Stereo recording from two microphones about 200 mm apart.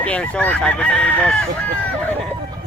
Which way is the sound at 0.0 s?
5° left (ahead or behind).